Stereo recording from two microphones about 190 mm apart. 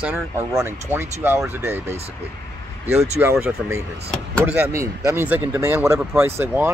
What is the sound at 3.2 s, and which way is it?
Speech, 10° right (ahead or behind).